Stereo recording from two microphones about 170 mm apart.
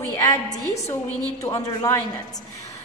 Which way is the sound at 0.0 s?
20° left (ahead or behind).